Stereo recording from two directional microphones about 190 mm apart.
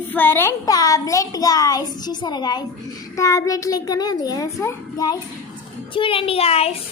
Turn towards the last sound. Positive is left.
turn(degrees=30)  # may be behind; listen again after turning